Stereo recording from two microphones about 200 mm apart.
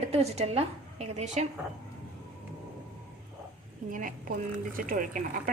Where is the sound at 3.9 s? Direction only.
45° right (ahead or behind).